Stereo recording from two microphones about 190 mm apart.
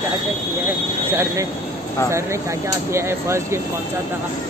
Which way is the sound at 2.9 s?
15° right (ahead or behind).